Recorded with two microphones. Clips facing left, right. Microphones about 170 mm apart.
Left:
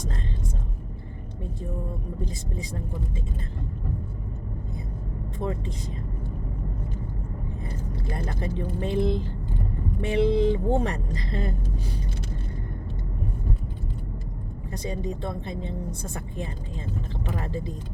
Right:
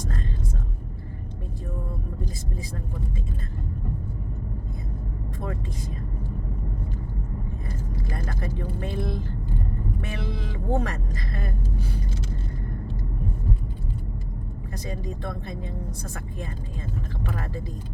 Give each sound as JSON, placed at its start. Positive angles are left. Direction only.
{"t": 8.1, "sound": "speech", "side_deg": 25}
{"t": 14.7, "sound": "speech", "side_deg": 20}